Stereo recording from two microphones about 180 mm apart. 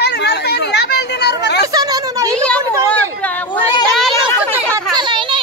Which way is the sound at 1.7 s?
20° right (ahead or behind).